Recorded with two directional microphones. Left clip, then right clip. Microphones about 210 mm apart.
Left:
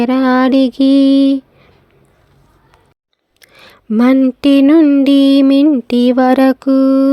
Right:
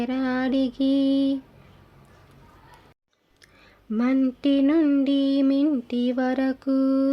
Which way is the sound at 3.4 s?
50° left (ahead or behind).